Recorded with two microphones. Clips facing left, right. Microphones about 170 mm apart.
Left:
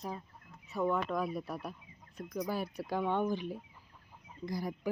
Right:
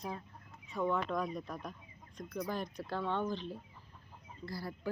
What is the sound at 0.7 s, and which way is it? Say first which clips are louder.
Speech: left 2 dB; 5° left (ahead or behind).